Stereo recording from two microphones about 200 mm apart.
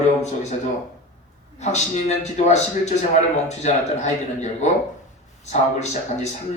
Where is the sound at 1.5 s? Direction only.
35° left (ahead or behind).